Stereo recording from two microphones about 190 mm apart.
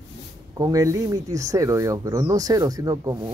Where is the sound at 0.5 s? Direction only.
20° right (ahead or behind).